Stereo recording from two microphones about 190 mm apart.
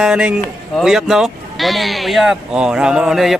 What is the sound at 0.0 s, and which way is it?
Speech, 5° right (ahead or behind).